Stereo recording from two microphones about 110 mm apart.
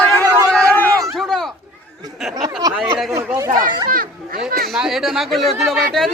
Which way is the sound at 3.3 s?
30° right (ahead or behind).